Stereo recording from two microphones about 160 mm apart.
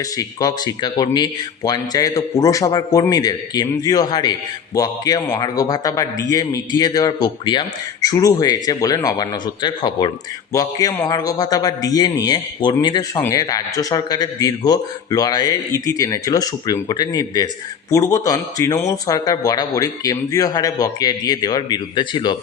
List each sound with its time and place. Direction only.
0.0 s speech: 20° left (ahead or behind)